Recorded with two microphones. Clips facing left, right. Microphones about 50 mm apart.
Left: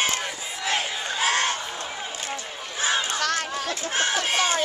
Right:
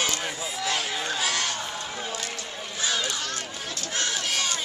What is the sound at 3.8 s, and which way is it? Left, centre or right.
Crowd, left.